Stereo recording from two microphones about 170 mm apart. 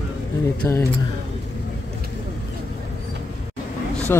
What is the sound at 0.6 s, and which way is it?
Speech, 15° left (ahead or behind).